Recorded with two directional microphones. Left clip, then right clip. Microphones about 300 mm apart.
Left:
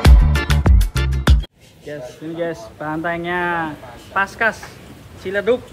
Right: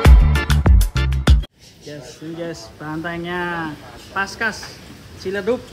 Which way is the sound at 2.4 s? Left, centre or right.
Centre.